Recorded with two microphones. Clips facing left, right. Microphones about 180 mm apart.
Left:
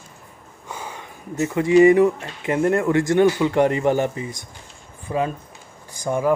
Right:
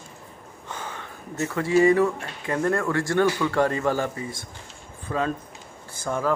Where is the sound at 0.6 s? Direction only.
10° left (ahead or behind).